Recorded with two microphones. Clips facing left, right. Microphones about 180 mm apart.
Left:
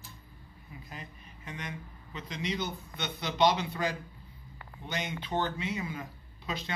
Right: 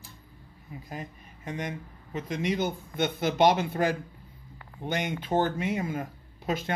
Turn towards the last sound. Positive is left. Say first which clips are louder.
# right 7 dB
turn(degrees=-50)  # may be behind; listen again after turning